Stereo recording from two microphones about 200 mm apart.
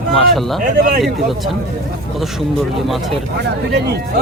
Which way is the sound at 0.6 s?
45° right (ahead or behind).